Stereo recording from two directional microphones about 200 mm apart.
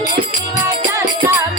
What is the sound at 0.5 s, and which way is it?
Music, 20° right (ahead or behind).